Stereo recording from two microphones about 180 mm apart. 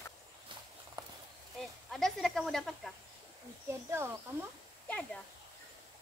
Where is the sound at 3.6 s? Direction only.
15° right (ahead or behind).